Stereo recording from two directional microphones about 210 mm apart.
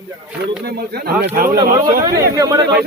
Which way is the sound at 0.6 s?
50° right (ahead or behind).